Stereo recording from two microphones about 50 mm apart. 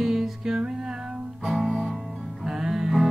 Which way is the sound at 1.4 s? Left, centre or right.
Centre.